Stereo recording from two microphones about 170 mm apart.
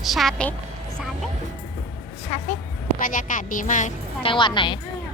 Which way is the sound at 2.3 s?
40° left (ahead or behind).